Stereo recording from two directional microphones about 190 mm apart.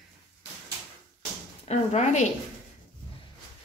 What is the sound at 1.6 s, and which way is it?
Speech, 35° left (ahead or behind).